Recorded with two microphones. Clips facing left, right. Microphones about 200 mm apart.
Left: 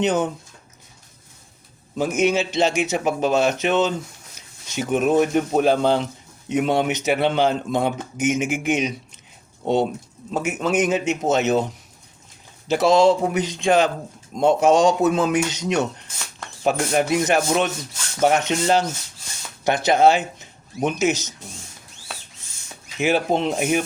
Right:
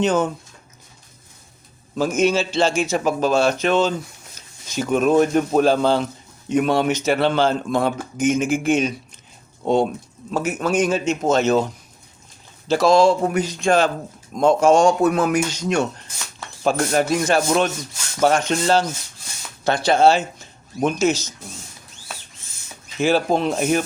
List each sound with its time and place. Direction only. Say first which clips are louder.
0.0 s a man's voice: right 2 dB; 20° left (ahead or behind)
2.0 s a man's voice: right 1 dB; 20° left (ahead or behind)
10.3 s a man's voice: right 1 dB; 20° left (ahead or behind)
23.0 s speech: right 2 dB; 20° left (ahead or behind)